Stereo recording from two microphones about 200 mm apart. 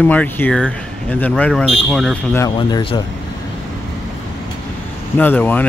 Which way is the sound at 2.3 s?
20° left (ahead or behind).